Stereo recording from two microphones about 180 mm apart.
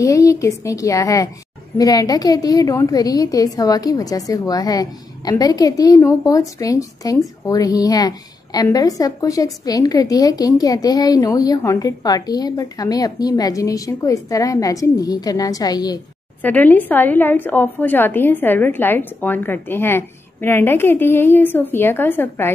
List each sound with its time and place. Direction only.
0.0 s a woman's voice: 20° left (ahead or behind)
16.4 s a woman's voice: 10° left (ahead or behind)